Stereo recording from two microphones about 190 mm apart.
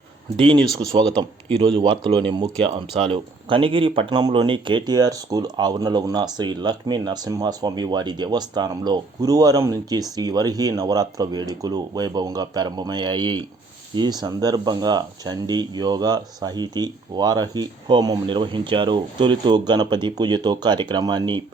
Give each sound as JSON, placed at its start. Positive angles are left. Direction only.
{"t": 0.3, "sound": "speech", "side_deg": -25}